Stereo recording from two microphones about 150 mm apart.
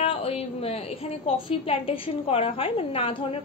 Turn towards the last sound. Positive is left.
turn(degrees=40)  # may be behind; listen again after turning